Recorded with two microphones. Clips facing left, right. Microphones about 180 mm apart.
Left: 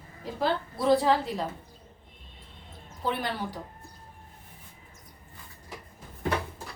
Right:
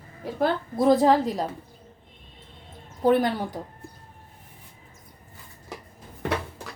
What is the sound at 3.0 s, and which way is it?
Speech, 45° right (ahead or behind).